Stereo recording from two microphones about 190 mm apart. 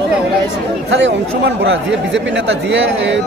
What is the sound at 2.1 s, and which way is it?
Speech, 80° right.